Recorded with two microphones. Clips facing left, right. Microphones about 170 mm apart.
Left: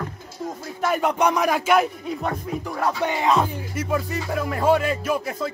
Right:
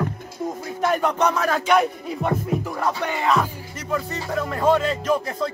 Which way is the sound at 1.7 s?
Centre (ahead or behind).